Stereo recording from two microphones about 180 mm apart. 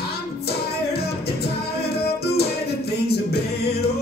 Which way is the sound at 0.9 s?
65° left (ahead or behind).